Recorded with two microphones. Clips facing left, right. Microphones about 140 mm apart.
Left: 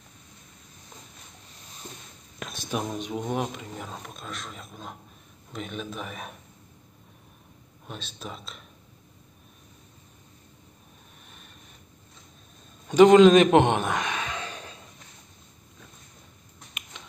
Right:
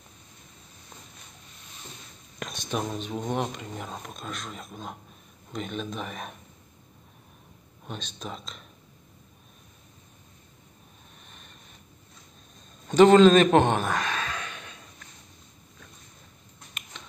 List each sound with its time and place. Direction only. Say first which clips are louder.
2.3 s speech: even; centre (ahead or behind)
7.8 s speech: right 1 dB; 5° left (ahead or behind)
11.2 s a sound: left 1 dB; 5° left (ahead or behind)
12.8 s a man's voice: left 1 dB; 10° left (ahead or behind)
14.5 s a sound: left 3 dB; 30° left (ahead or behind)
17.0 s finger snapping: right 1 dB; 15° left (ahead or behind)